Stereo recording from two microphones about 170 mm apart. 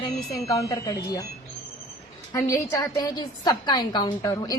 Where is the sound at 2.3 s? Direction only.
15° left (ahead or behind).